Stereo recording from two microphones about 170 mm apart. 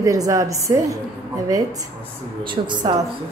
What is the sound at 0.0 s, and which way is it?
A woman's voice, 20° right (ahead or behind).